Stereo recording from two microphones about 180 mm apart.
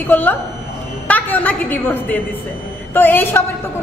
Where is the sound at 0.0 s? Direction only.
10° left (ahead or behind).